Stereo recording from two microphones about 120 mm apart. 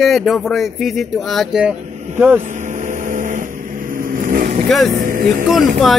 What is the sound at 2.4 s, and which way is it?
Vehicle, 90° right.